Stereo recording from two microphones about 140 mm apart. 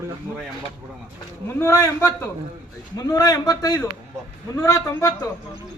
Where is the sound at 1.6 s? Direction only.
20° left (ahead or behind).